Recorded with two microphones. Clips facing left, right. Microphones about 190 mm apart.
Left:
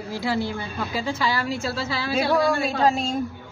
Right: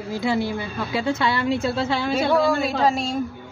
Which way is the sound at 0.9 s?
25° right (ahead or behind).